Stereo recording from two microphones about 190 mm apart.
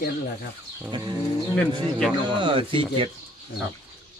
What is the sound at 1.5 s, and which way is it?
Speech, 5° left (ahead or behind).